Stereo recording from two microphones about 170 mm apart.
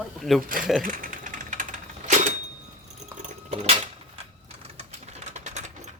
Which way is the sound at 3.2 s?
40° right (ahead or behind).